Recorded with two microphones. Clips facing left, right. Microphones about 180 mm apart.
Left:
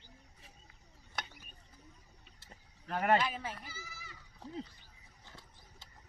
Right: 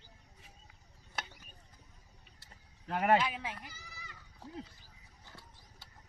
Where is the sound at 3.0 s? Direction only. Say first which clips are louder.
Right 1 dB; 10° right (ahead or behind).